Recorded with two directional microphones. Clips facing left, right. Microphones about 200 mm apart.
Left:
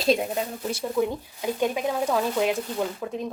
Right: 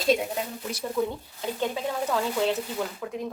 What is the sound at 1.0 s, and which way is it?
Speech, 15° left (ahead or behind).